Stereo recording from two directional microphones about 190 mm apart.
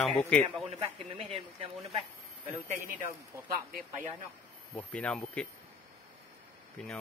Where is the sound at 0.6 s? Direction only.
30° right (ahead or behind).